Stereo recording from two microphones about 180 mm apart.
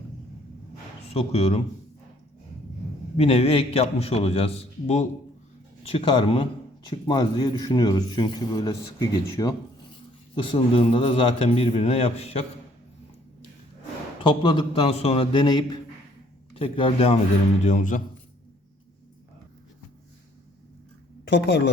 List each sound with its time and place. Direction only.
1.1 s a man's voice: 35° left (ahead or behind)
3.2 s a man's voice: 35° left (ahead or behind)
14.2 s a man's voice: 25° left (ahead or behind)
17.6 s a man's voice: 45° left (ahead or behind)
21.2 s speech: 80° left